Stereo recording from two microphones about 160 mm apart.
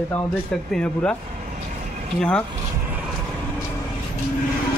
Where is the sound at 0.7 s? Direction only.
5° left (ahead or behind).